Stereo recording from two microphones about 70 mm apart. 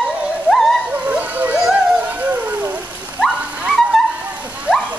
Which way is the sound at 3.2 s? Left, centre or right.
Centre.